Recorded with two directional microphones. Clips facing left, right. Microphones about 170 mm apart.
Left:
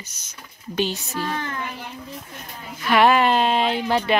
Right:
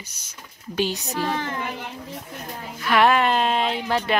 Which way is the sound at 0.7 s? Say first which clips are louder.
Even; 10° right (ahead or behind).